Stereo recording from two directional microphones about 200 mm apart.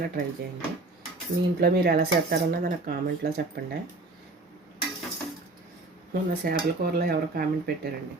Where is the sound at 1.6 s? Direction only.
50° right (ahead or behind).